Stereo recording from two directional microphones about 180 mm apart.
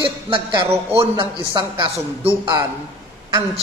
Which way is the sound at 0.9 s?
25° right (ahead or behind).